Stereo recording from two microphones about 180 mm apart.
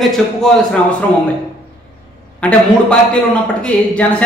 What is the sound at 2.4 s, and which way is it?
Speech, 5° left (ahead or behind).